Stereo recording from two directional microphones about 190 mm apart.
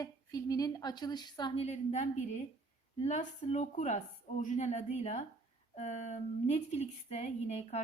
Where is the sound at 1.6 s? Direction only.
35° left (ahead or behind).